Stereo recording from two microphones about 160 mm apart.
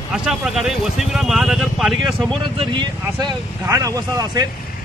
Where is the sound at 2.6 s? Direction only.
30° right (ahead or behind).